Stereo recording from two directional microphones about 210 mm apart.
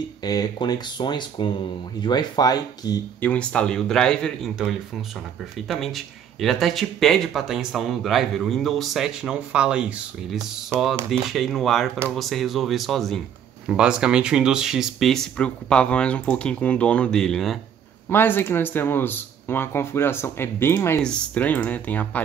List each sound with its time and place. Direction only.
0.2 s speech: 20° left (ahead or behind)
3.2 s speech: 5° left (ahead or behind)